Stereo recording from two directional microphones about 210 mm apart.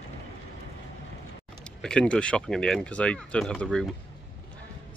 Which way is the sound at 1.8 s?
5° left (ahead or behind).